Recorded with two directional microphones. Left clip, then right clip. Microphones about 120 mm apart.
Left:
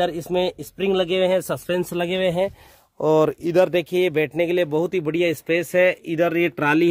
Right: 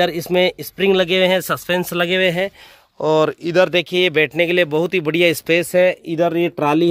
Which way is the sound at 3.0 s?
20° left (ahead or behind).